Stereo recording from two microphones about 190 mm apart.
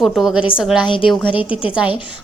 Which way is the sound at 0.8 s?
25° left (ahead or behind).